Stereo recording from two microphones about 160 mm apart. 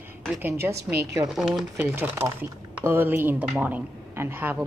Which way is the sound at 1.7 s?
15° right (ahead or behind).